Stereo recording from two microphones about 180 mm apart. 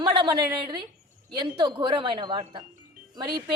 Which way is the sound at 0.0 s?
25° right (ahead or behind).